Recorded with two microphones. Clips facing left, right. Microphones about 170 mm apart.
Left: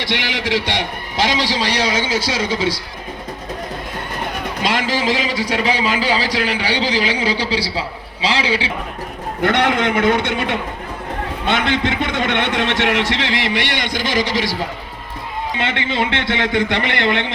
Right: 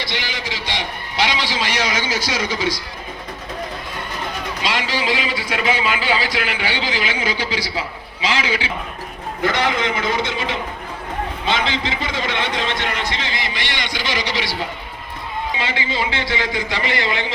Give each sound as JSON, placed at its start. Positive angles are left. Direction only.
{"t": 0.1, "sound": "a man's voice", "side_deg": 75}
{"t": 1.1, "sound": "a man's voice", "side_deg": 40}
{"t": 4.6, "sound": "a man's voice", "side_deg": 50}
{"t": 9.4, "sound": "a man's voice", "side_deg": 65}
{"t": 15.5, "sound": "a man's voice", "side_deg": 60}